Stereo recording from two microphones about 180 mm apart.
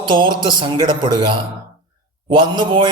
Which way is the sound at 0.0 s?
25° right (ahead or behind).